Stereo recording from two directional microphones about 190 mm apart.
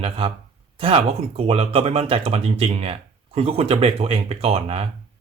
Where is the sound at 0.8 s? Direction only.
30° right (ahead or behind).